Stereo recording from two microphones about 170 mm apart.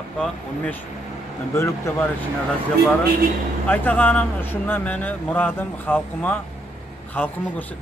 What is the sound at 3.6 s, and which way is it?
Speech, 10° left (ahead or behind).